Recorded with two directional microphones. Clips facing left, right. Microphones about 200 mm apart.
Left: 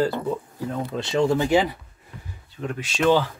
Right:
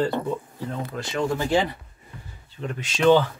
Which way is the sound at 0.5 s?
25° left (ahead or behind).